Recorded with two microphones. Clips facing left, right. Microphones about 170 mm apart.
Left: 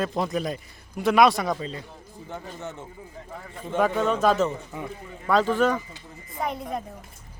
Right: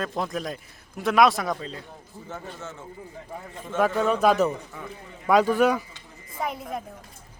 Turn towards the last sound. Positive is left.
turn(degrees=0)  # may be behind; listen again after turning